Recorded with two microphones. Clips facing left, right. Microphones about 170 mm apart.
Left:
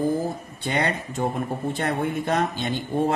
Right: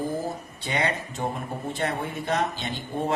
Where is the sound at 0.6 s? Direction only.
50° left (ahead or behind).